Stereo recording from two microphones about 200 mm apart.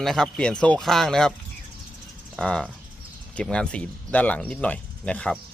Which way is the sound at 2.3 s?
5° left (ahead or behind).